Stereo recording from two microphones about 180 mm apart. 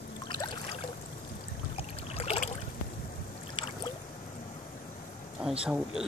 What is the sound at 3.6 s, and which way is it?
Boat, 30° left (ahead or behind).